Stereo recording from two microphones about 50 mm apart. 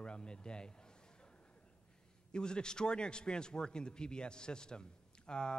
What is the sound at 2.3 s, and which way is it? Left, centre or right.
A man's voice, centre.